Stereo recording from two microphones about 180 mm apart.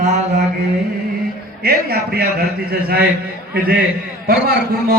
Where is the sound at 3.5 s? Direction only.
60° right (ahead or behind).